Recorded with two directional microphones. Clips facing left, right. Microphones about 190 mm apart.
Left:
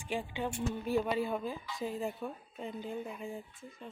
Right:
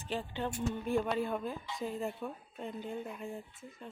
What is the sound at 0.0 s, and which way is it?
A woman's voice, 10° left (ahead or behind).